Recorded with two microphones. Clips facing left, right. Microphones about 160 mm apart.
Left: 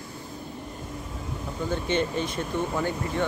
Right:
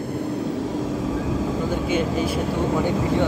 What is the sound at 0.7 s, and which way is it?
Vehicle, 90° right.